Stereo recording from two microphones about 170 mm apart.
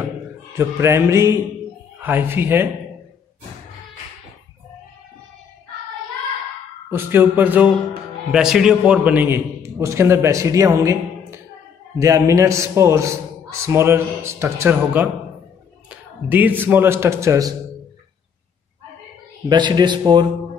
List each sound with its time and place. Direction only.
0.5 s a man's voice: 15° right (ahead or behind)
6.9 s a man's voice: 10° right (ahead or behind)
19.5 s a man's voice: 25° right (ahead or behind)